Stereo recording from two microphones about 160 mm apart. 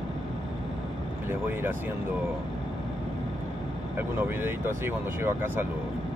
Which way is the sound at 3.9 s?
15° right (ahead or behind).